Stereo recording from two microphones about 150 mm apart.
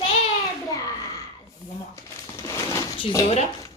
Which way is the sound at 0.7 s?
20° left (ahead or behind).